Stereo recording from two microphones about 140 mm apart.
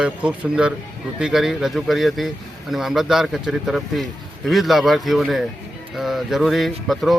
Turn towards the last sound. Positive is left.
turn(degrees=0)  # may be behind; listen again after turning